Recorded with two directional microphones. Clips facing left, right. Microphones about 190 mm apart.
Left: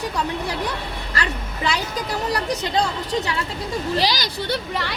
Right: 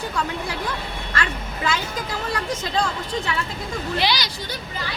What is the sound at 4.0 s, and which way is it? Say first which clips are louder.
Speech: right 1 dB; 40° left (ahead or behind).